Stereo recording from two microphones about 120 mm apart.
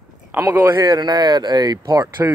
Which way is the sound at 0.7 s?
35° right (ahead or behind).